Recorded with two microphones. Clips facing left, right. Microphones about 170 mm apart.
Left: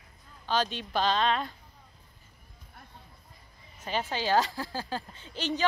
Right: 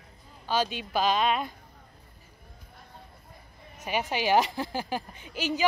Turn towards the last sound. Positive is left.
turn(degrees=-10)  # may be behind; listen again after turning